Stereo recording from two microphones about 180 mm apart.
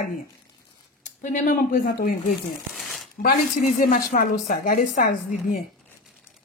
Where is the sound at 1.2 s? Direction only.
45° left (ahead or behind).